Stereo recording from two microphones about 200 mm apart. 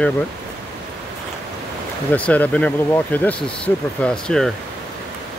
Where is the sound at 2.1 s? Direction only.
5° left (ahead or behind).